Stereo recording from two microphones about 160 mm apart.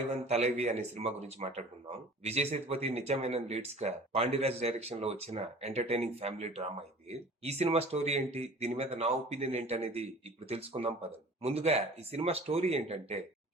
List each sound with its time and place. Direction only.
0.1 s speech: 40° right (ahead or behind)